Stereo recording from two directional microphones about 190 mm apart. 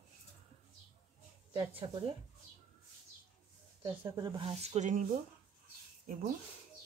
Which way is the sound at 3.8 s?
20° right (ahead or behind).